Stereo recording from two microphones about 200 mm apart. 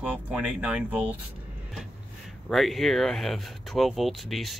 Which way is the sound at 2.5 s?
Centre (ahead or behind).